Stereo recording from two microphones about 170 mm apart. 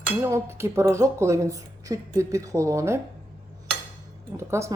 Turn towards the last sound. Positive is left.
turn(degrees=-15)  # may be behind; listen again after turning